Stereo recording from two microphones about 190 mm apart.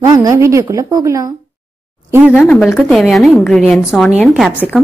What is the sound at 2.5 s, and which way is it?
Speech, 5° left (ahead or behind).